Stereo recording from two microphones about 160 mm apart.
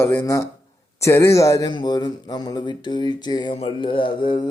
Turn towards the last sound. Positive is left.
turn(degrees=30)  # may be behind; listen again after turning